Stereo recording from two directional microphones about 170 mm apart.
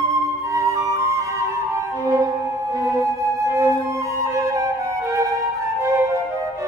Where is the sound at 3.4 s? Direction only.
15° right (ahead or behind).